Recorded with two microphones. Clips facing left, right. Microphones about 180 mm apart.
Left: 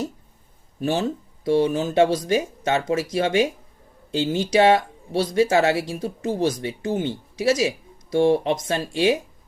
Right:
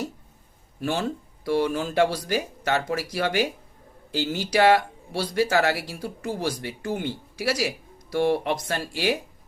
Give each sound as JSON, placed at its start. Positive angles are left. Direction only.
{"t": 0.8, "sound": "speech", "side_deg": 20}